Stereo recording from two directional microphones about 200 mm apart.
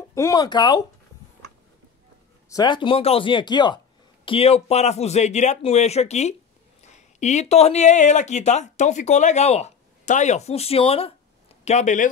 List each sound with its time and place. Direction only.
0.1 s speech: 15° left (ahead or behind)
2.5 s speech: 20° left (ahead or behind); by 12.1 s 40° left (ahead or behind)